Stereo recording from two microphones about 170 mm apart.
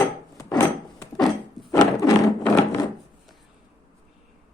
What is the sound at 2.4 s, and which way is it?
Wood, 10° left (ahead or behind).